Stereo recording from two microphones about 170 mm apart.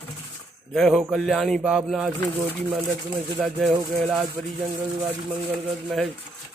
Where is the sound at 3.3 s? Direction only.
Centre (ahead or behind).